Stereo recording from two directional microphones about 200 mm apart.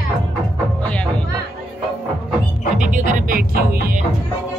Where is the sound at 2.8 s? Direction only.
40° right (ahead or behind).